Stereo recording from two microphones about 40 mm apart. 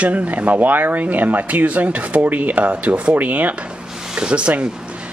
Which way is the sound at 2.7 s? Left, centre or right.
Right.